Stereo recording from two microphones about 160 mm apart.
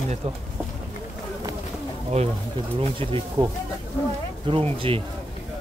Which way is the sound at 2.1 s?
45° right (ahead or behind).